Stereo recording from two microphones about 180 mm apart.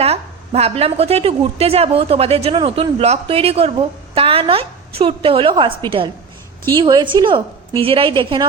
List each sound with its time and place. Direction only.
0.0 s a woman's voice: 35° right (ahead or behind)